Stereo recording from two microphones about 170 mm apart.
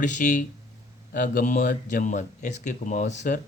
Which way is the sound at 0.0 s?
50° left (ahead or behind).